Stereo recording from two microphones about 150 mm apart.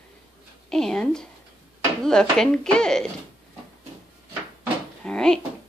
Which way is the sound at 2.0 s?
5° left (ahead or behind).